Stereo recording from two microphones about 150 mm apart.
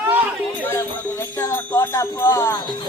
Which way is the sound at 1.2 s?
15° left (ahead or behind).